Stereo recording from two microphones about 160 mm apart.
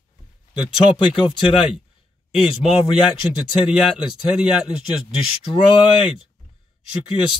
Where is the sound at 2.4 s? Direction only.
5° right (ahead or behind).